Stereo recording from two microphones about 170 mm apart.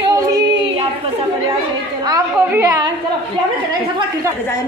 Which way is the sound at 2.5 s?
20° right (ahead or behind).